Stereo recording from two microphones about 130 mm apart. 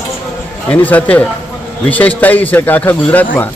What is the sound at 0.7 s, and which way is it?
A man's voice, 15° left (ahead or behind).